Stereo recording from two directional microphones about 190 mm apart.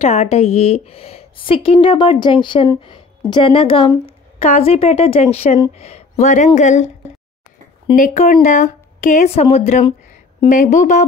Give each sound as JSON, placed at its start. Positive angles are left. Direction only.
{"t": 0.0, "sound": "speech", "side_deg": 35}
{"t": 7.9, "sound": "speech", "side_deg": 40}